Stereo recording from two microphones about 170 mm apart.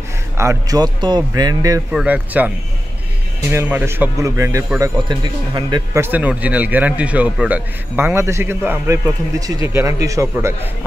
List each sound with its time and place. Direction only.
0.4 s speech: 20° right (ahead or behind)
1.9 s a man's voice: 5° right (ahead or behind); by 5.8 s 25° right (ahead or behind)
5.9 s a man's voice: 10° right (ahead or behind)